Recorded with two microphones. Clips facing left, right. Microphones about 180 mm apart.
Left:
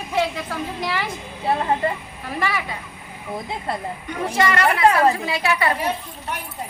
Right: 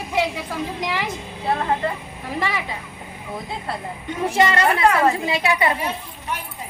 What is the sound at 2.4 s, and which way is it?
Speech, 20° right (ahead or behind).